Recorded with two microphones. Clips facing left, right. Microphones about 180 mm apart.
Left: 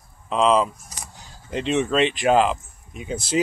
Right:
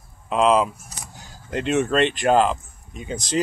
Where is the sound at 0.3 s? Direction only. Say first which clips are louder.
Right 1 dB; 5° right (ahead or behind).